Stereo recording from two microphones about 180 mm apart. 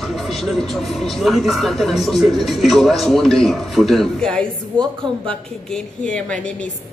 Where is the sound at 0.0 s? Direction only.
Centre (ahead or behind).